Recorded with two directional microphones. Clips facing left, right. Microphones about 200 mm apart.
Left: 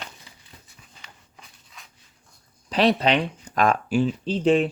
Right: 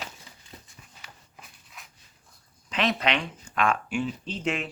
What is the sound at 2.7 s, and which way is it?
Speech, 35° left (ahead or behind).